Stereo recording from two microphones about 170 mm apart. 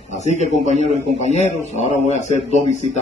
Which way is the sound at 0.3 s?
40° left (ahead or behind).